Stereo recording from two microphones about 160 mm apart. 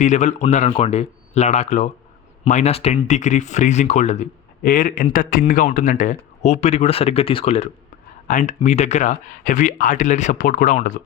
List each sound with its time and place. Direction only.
0.0 s a man's voice: 50° left (ahead or behind)
8.3 s speech: 50° left (ahead or behind)